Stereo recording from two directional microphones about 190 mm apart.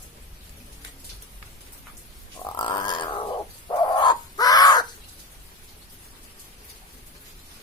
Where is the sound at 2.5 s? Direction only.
25° left (ahead or behind).